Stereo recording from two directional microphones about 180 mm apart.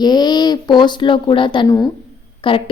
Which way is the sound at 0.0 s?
20° left (ahead or behind).